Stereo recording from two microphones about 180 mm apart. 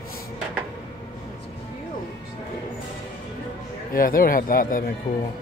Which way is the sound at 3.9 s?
50° left (ahead or behind).